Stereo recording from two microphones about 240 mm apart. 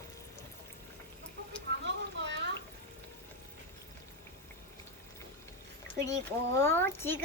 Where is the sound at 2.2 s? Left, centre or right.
Right.